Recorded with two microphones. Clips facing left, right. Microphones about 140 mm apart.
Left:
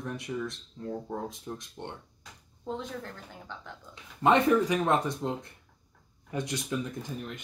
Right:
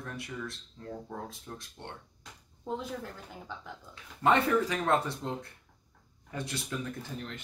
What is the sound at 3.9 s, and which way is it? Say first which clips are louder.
Speech: left 2 dB; 20° left (ahead or behind).